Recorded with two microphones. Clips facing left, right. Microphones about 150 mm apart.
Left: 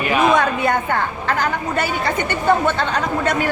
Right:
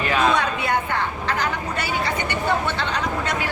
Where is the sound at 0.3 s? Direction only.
50° left (ahead or behind).